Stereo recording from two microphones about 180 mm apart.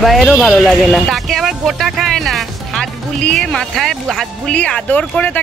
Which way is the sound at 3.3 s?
5° left (ahead or behind).